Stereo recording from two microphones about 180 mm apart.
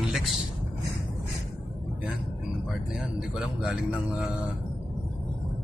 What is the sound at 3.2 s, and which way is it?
Speech, 5° right (ahead or behind).